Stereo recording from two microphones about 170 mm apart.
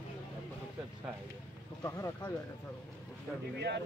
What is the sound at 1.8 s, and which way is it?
Speech, 15° left (ahead or behind).